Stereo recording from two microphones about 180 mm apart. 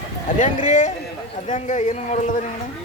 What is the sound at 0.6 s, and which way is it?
A man's voice, 45° left (ahead or behind).